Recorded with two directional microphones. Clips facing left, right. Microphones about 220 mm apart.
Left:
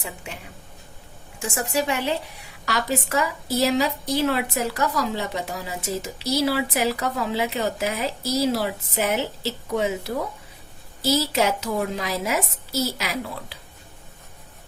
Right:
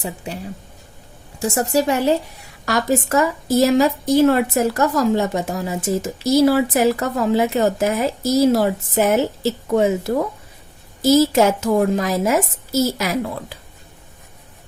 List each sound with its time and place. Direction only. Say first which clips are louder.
0.3 s a woman's voice: right 9 dB; 35° right (ahead or behind)